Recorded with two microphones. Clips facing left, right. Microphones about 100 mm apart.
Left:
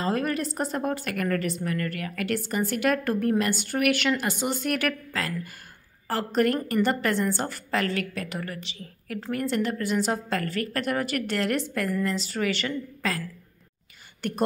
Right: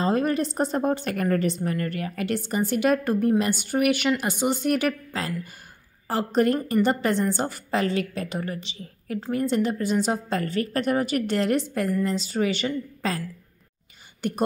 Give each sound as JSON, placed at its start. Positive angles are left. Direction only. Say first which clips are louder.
{"t": 0.0, "sound": "a woman's voice", "louder": "right 4 dB", "side_deg": -25}
{"t": 14.2, "sound": "a woman's voice", "louder": "right 3 dB", "side_deg": -15}